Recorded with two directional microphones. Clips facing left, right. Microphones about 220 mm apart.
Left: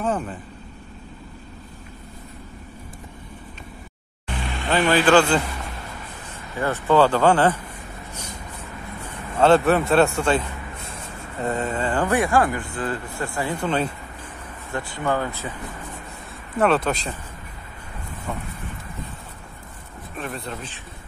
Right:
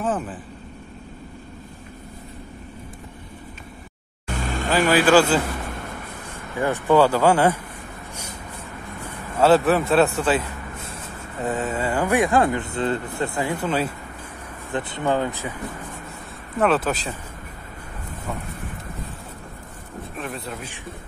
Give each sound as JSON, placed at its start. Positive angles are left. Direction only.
{"t": 0.0, "sound": "speech", "side_deg": -5}
{"t": 4.3, "sound": "vehicle", "side_deg": -45}
{"t": 4.9, "sound": "speech", "side_deg": -5}
{"t": 6.6, "sound": "speech", "side_deg": -15}
{"t": 9.4, "sound": "a man's voice", "side_deg": -5}
{"t": 14.7, "sound": "speech", "side_deg": -20}
{"t": 16.5, "sound": "a man's voice", "side_deg": 0}
{"t": 20.2, "sound": "a man's voice", "side_deg": 0}